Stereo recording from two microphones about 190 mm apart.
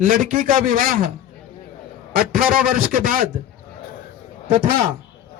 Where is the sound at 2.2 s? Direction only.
50° right (ahead or behind).